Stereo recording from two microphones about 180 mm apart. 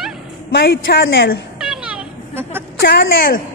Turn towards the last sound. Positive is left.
turn(degrees=55)  # may be behind; listen again after turning